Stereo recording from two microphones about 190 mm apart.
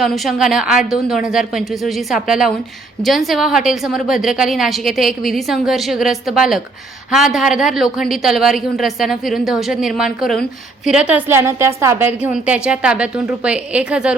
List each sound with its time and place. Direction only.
0.0 s a woman's voice: centre (ahead or behind)